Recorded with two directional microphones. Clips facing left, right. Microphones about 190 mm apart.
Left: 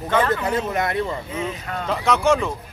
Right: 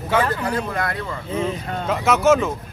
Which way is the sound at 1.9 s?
5° right (ahead or behind).